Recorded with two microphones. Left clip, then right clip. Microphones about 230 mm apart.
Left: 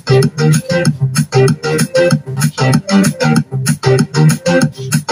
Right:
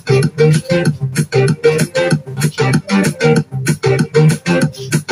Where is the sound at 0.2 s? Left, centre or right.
Left.